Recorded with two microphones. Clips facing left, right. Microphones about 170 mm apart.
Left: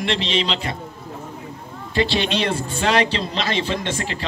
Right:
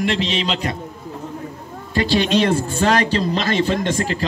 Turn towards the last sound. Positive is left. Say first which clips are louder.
# right 5 dB
turn(degrees=-40)  # may be behind; listen again after turning